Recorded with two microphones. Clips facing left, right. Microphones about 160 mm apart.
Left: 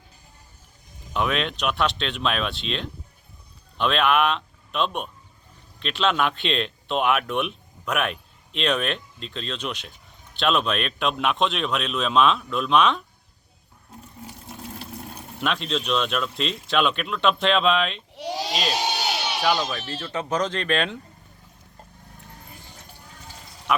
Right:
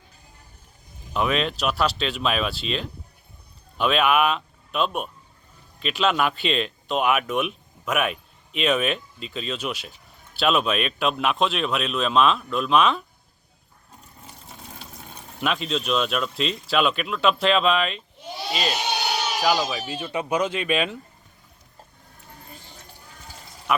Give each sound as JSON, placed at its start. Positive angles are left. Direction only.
{"t": 1.1, "sound": "a man's voice", "side_deg": 0}
{"t": 14.6, "sound": "speech", "side_deg": 0}
{"t": 18.1, "sound": "speech", "side_deg": 90}
{"t": 19.4, "sound": "speech", "side_deg": -5}